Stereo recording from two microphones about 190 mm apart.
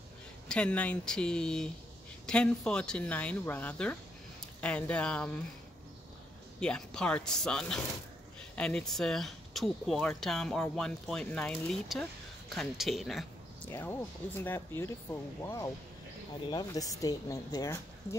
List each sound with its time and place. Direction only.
0.5 s speech: 5° left (ahead or behind)
6.6 s speech: 5° left (ahead or behind)
13.7 s a woman's voice: 10° left (ahead or behind)